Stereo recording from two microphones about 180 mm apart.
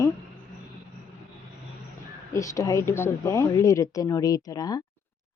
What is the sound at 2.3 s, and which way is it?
Speech, 15° left (ahead or behind).